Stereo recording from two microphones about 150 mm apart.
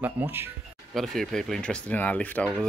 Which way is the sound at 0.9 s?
Centre (ahead or behind).